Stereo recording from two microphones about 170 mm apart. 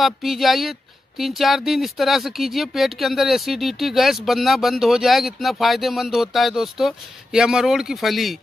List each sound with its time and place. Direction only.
0.0 s speech: centre (ahead or behind)